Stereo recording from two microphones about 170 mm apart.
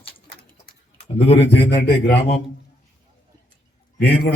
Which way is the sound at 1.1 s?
35° left (ahead or behind).